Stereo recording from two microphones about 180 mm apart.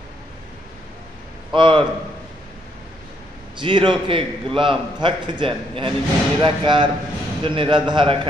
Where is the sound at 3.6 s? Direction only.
25° right (ahead or behind).